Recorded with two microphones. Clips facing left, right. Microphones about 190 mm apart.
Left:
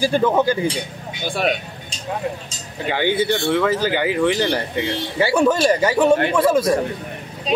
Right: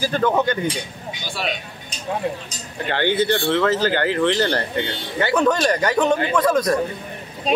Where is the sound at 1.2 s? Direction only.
55° left (ahead or behind).